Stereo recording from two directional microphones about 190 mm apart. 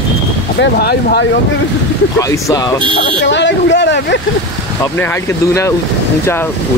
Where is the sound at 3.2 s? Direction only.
70° left (ahead or behind).